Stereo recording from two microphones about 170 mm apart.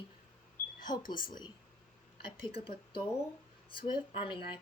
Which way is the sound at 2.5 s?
30° left (ahead or behind).